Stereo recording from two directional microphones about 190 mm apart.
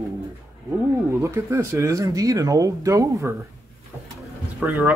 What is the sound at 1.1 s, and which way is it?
Speech, 15° right (ahead or behind).